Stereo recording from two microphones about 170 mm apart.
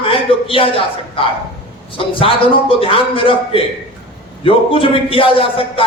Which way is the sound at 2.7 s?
30° left (ahead or behind).